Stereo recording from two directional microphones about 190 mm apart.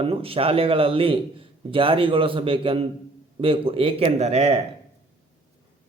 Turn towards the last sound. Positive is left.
turn(degrees=-35)  # may be behind; listen again after turning